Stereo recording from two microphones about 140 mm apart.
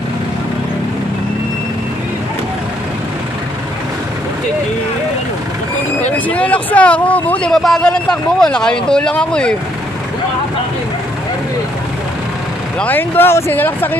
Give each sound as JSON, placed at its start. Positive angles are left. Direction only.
{"t": 6.1, "sound": "speech", "side_deg": 10}
{"t": 12.7, "sound": "speech", "side_deg": 10}